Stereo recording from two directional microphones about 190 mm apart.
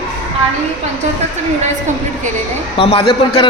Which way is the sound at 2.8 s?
30° left (ahead or behind).